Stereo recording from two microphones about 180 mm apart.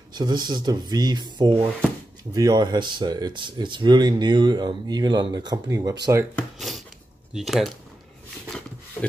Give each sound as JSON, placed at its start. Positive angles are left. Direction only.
{"t": 0.1, "sound": "speech", "side_deg": -25}
{"t": 6.3, "sound": "a sound", "side_deg": 0}
{"t": 7.3, "sound": "speech", "side_deg": 0}